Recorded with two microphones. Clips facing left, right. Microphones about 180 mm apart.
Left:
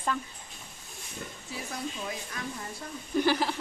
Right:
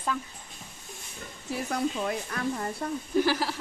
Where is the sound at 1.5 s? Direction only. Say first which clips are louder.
Right 9 dB; 65° right (ahead or behind).